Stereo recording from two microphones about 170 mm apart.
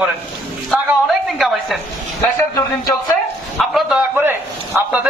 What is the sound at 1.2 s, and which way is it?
Speech, centre (ahead or behind).